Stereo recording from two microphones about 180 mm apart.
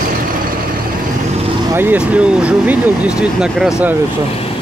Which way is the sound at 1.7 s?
10° right (ahead or behind).